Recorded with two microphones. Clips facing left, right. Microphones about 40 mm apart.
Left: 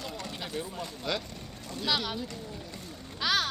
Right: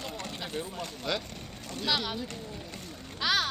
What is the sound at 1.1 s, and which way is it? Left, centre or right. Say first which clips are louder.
Speech: even; centre.